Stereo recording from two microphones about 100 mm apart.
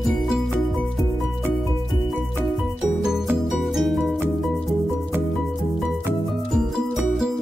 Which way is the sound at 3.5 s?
Centre (ahead or behind).